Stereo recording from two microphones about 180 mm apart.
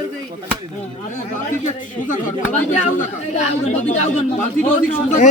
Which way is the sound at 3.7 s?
40° left (ahead or behind).